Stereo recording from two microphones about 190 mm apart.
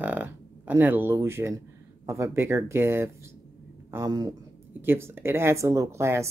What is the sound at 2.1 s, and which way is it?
Speech, 15° right (ahead or behind).